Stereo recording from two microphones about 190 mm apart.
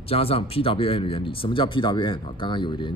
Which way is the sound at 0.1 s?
30° left (ahead or behind).